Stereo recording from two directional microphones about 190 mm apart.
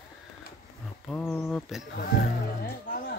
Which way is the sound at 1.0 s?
5° left (ahead or behind).